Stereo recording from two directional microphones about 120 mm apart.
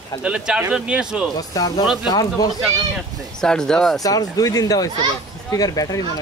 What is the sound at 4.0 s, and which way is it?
Speech, 30° left (ahead or behind).